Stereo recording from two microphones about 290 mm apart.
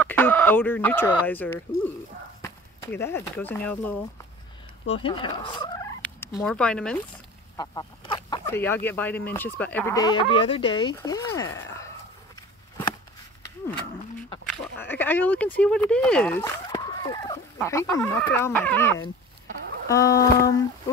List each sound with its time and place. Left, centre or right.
0.0 s speech: centre
3.0 s speech: centre
4.8 s speech: centre
6.0 s speech: centre
11.5 s a sound: centre
14.5 s speech: centre